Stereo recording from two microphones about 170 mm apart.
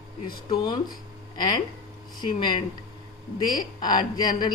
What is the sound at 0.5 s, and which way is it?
A woman's voice, 25° left (ahead or behind).